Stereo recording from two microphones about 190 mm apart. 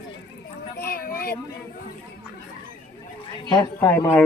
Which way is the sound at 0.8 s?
50° left (ahead or behind).